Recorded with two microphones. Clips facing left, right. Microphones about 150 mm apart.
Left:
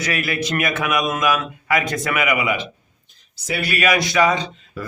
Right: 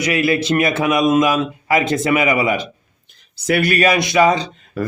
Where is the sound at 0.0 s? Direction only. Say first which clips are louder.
Right 6 dB; 25° right (ahead or behind).